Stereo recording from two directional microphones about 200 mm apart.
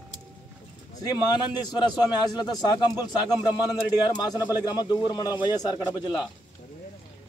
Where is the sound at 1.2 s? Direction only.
20° left (ahead or behind).